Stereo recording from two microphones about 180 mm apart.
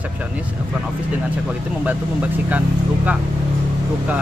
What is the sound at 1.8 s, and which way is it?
Speech, 10° right (ahead or behind).